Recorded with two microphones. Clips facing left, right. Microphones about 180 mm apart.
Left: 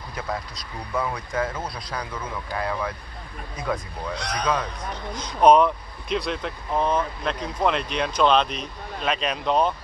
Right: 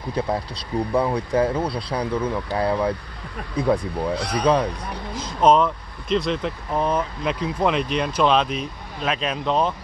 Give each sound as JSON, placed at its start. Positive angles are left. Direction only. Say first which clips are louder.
{"t": 0.1, "sound": "speech", "louder": "right 7 dB", "side_deg": -30}
{"t": 4.2, "sound": "speech", "louder": "right 5 dB", "side_deg": -5}
{"t": 5.5, "sound": "speech", "louder": "left 1 dB", "side_deg": 0}